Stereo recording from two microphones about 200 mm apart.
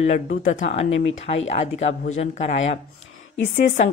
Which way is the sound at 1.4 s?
35° left (ahead or behind).